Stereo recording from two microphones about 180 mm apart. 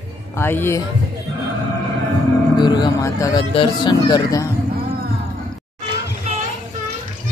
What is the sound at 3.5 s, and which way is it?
Speech, 25° left (ahead or behind).